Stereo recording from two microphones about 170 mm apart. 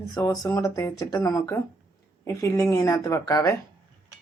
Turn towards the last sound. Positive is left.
turn(degrees=20)  # may be behind; listen again after turning